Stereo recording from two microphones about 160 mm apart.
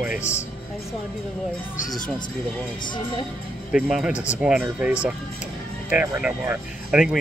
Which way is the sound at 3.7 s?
5° right (ahead or behind).